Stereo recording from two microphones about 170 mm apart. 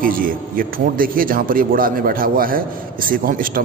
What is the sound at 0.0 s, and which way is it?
Speech, 55° right (ahead or behind).